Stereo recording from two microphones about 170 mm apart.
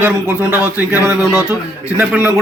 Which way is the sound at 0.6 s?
20° left (ahead or behind).